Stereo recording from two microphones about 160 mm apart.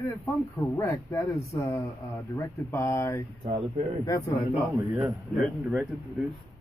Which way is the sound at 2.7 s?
15° left (ahead or behind).